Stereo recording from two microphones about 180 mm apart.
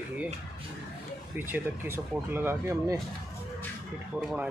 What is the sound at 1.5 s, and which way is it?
Speech, 15° right (ahead or behind).